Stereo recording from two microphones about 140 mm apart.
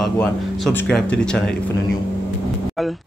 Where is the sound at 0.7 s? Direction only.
15° left (ahead or behind).